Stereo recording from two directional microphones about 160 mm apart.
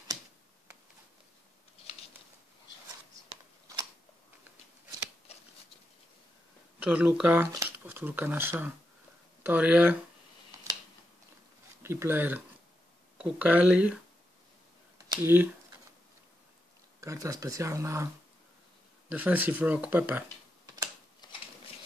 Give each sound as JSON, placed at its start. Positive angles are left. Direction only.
{"t": 6.8, "sound": "speech", "side_deg": -5}
{"t": 11.8, "sound": "speech", "side_deg": -15}
{"t": 15.0, "sound": "speech", "side_deg": -15}
{"t": 17.0, "sound": "speech", "side_deg": -20}
{"t": 21.2, "sound": "a sound", "side_deg": 25}